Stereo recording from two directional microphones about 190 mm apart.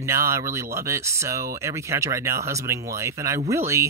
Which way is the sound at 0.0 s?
15° right (ahead or behind).